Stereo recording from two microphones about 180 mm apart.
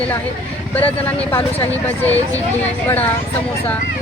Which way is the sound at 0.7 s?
10° left (ahead or behind).